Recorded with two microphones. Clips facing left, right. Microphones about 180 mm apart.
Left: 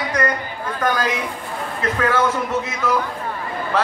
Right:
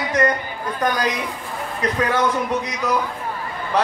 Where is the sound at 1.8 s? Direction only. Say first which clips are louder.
Left 1 dB; 15° right (ahead or behind).